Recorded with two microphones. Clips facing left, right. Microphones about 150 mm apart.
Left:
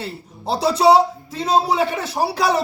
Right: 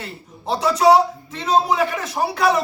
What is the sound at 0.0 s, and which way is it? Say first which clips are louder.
A man's voice: left 3 dB; 35° left (ahead or behind).